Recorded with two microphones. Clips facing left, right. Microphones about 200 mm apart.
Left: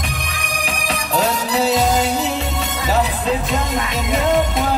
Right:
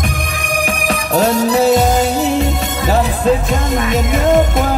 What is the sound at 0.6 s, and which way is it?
Music, 45° right (ahead or behind).